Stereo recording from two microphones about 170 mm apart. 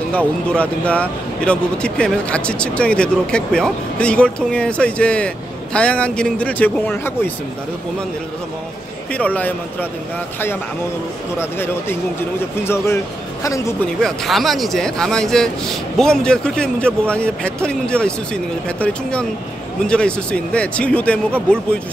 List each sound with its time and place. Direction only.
0.1 s speech: 10° left (ahead or behind)
9.1 s speech: 10° left (ahead or behind)
11.3 s a man's voice: 15° left (ahead or behind)
14.0 s speech: centre (ahead or behind)